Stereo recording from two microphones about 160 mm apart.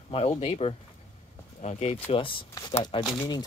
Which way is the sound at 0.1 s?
40° left (ahead or behind).